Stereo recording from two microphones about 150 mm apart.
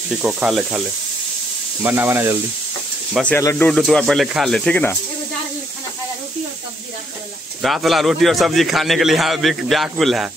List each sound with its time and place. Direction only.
0.2 s a man's voice: 5° right (ahead or behind)
1.8 s speech: 15° right (ahead or behind)
3.3 s speech: 15° left (ahead or behind)
3.7 s a man's voice: centre (ahead or behind)
7.6 s a man's voice: centre (ahead or behind)